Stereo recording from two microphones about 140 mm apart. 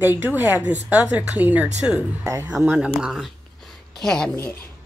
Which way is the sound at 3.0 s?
Centre (ahead or behind).